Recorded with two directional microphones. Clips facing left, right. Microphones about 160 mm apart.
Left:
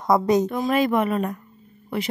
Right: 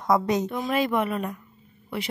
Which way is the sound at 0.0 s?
35° left (ahead or behind).